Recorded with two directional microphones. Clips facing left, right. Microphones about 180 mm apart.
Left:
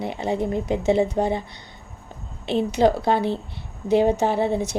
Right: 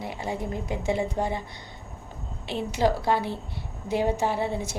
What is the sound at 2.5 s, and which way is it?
Speech, 20° left (ahead or behind).